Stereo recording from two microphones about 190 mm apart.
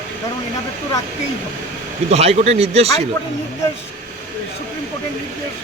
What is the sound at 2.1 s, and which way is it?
Speech, 35° right (ahead or behind).